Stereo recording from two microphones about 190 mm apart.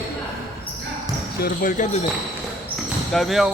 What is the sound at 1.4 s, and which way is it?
Speech, 45° left (ahead or behind).